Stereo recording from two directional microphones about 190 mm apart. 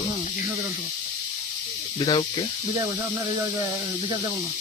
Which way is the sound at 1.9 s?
25° left (ahead or behind).